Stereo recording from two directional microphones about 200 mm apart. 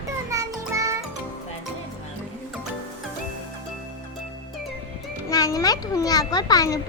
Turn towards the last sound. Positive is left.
turn(degrees=20)  # may be behind; listen again after turning